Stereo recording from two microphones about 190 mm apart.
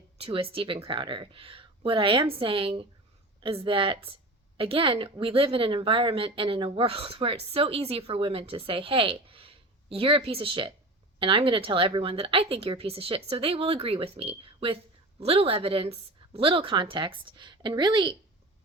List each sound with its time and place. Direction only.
0.2 s a woman's voice: 30° right (ahead or behind)